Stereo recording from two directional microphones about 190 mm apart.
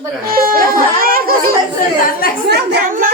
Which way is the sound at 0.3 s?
50° right (ahead or behind).